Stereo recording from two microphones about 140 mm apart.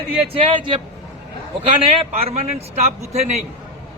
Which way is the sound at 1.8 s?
45° right (ahead or behind).